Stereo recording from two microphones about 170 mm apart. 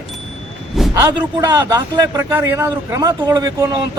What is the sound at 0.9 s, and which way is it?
Speech, 20° right (ahead or behind).